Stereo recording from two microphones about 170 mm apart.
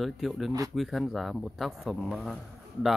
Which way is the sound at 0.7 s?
Centre (ahead or behind).